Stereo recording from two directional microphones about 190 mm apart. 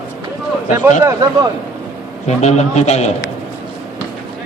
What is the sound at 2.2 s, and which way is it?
Speech, 35° left (ahead or behind).